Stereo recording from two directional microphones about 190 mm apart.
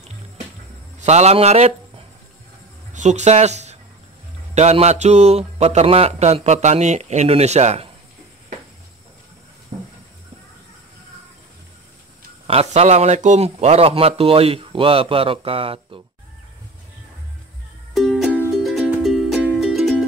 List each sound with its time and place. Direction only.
0.9 s speech: 35° right (ahead or behind)
9.7 s a sound: 30° right (ahead or behind)
12.4 s a man's voice: 35° right (ahead or behind)
17.9 s music: centre (ahead or behind)